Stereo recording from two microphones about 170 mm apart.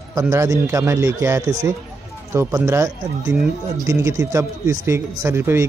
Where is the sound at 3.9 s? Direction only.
15° right (ahead or behind).